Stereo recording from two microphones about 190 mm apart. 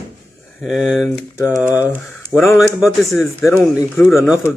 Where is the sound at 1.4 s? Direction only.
15° left (ahead or behind).